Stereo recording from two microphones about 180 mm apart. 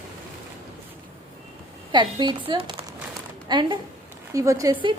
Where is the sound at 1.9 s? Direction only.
25° right (ahead or behind).